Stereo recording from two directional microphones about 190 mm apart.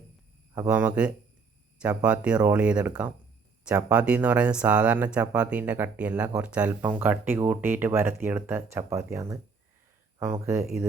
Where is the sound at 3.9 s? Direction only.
5° right (ahead or behind).